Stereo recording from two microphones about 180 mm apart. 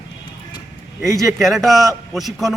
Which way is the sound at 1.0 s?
Centre (ahead or behind).